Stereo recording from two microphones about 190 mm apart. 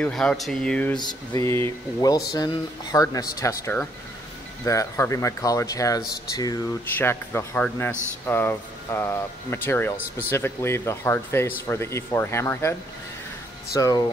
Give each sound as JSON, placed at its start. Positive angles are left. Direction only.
{"t": 0.0, "sound": "speech", "side_deg": 5}
{"t": 0.9, "sound": "speech", "side_deg": 20}
{"t": 13.7, "sound": "speech", "side_deg": 20}